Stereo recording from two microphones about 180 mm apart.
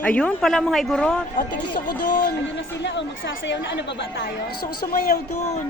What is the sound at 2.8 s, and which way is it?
Speech, 80° left.